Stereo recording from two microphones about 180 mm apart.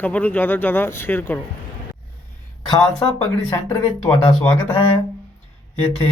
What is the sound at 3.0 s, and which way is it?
Speech, 15° left (ahead or behind).